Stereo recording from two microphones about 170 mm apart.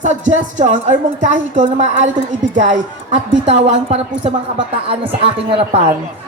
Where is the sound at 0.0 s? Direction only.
45° right (ahead or behind).